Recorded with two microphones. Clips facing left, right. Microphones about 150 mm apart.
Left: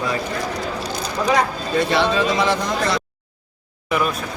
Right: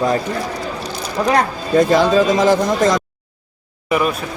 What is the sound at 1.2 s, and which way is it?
Speech, 65° right (ahead or behind).